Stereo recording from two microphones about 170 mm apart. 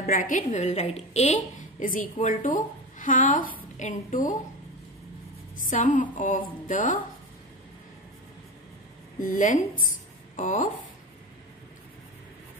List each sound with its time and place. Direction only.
0.0 s a woman's voice: 50° left (ahead or behind)
5.6 s a woman's voice: 50° left (ahead or behind)
9.2 s a woman's voice: 50° left (ahead or behind)